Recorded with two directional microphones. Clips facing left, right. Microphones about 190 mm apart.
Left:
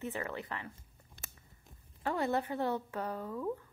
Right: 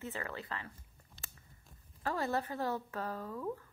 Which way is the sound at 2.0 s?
20° left (ahead or behind).